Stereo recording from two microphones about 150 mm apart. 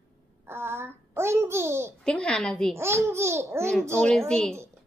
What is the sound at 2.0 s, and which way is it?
Speech, 5° left (ahead or behind).